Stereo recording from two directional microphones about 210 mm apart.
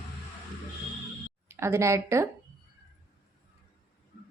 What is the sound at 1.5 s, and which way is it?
Speech, 10° right (ahead or behind).